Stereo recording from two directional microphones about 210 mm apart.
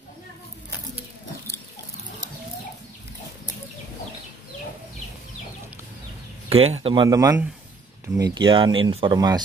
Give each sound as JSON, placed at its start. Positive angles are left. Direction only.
{"t": 6.5, "sound": "speech", "side_deg": -30}